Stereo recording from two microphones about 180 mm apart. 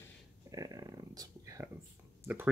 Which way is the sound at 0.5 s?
20° right (ahead or behind).